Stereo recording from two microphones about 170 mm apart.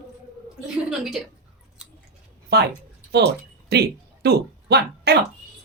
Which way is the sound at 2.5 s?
70° right (ahead or behind).